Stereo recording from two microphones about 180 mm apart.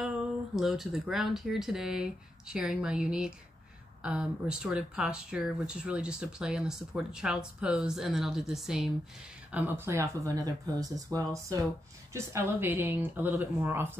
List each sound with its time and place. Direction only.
0.6 s speech: centre (ahead or behind)